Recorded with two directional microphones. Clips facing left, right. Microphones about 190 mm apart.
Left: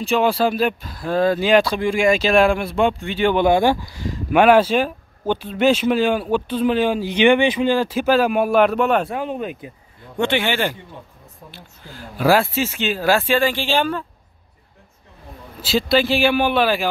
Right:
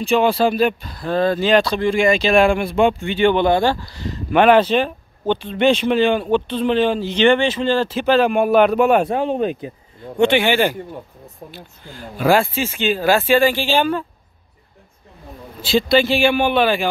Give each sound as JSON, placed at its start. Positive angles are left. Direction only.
{"t": 0.0, "sound": "speech", "side_deg": 0}
{"t": 9.1, "sound": "speech", "side_deg": -30}
{"t": 10.1, "sound": "speech", "side_deg": -15}
{"t": 11.9, "sound": "speech", "side_deg": 5}
{"t": 15.6, "sound": "speech", "side_deg": 5}